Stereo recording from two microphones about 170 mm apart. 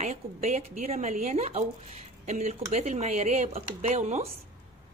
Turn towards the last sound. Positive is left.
turn(degrees=-45)  # may be behind; listen again after turning